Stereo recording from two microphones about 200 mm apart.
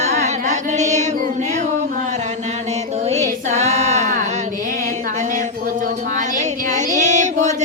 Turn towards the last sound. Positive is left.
turn(degrees=-35)  # may be behind; listen again after turning